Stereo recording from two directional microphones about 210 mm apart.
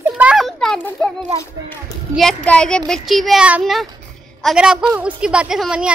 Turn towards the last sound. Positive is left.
turn(degrees=-5)  # may be behind; listen again after turning